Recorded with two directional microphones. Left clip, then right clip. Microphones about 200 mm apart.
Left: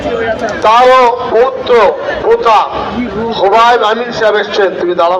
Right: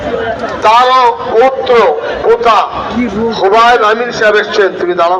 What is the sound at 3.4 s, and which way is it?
A man's voice, 55° right (ahead or behind).